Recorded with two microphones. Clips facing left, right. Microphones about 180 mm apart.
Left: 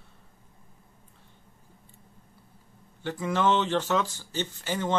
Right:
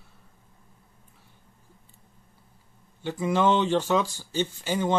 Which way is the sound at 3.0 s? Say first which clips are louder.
Right 2 dB; 15° right (ahead or behind).